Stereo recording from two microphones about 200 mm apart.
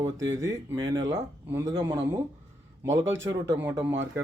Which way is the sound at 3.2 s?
15° right (ahead or behind).